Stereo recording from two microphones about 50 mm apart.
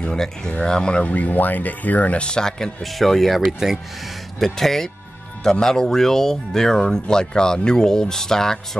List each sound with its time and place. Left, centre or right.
0.0 s speech: centre
1.1 s speech: left; by 3.8 s centre
4.4 s speech: centre